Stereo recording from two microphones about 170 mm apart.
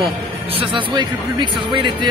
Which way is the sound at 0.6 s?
30° right (ahead or behind).